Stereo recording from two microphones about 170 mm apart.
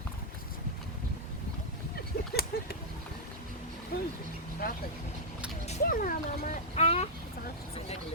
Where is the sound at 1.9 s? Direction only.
65° left (ahead or behind).